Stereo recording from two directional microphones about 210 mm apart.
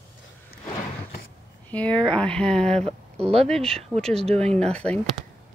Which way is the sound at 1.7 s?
5° left (ahead or behind).